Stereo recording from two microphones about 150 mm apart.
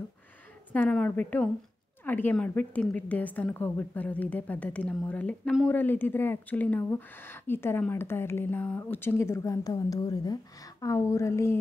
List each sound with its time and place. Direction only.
0.7 s a woman's voice: 5° left (ahead or behind)